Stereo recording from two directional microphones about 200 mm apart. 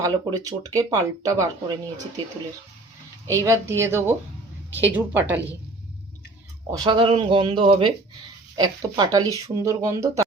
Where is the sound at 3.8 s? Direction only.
10° right (ahead or behind).